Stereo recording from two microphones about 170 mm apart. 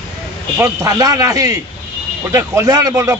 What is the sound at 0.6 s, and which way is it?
A man's voice, 20° right (ahead or behind).